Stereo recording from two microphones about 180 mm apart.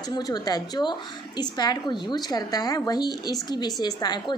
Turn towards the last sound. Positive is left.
turn(degrees=20)  # may be behind; listen again after turning